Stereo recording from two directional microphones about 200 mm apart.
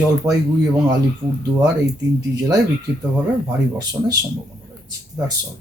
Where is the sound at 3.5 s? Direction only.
15° right (ahead or behind).